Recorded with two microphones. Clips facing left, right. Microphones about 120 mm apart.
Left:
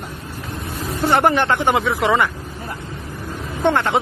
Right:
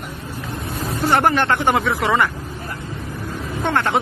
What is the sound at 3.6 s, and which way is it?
Speech, 15° left (ahead or behind).